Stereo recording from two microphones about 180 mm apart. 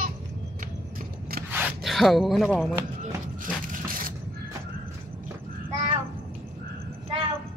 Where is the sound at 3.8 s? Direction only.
50° right (ahead or behind).